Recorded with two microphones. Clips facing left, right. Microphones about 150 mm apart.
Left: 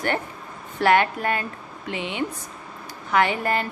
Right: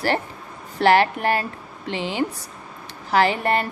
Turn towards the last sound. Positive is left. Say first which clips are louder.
# right 2 dB
turn(degrees=-30)  # may be behind; listen again after turning